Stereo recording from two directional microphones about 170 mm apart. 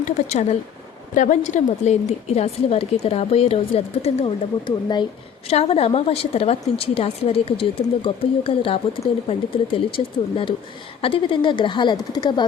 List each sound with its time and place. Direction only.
0.0 s a woman's voice: 40° left (ahead or behind); by 12.5 s 25° left (ahead or behind)